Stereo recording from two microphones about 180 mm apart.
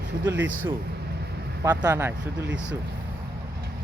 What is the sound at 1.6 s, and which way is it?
Speech, 15° right (ahead or behind).